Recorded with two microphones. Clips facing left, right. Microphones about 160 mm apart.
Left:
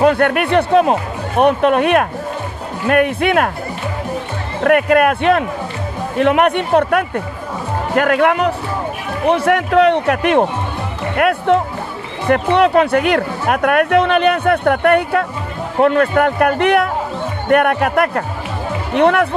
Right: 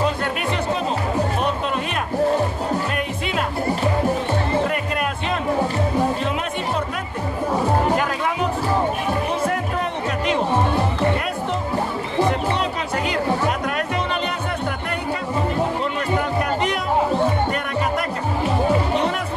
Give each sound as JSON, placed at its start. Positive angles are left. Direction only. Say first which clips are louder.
{"t": 0.0, "sound": "speech", "louder": "left 9 dB", "side_deg": 65}
{"t": 4.6, "sound": "speech", "louder": "left 11 dB", "side_deg": 65}
{"t": 9.3, "sound": "a sound", "louder": "left 9 dB", "side_deg": 75}
{"t": 11.1, "sound": "speech", "louder": "left 10 dB", "side_deg": 65}